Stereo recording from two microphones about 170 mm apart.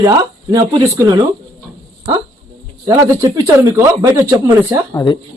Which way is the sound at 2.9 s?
20° right (ahead or behind).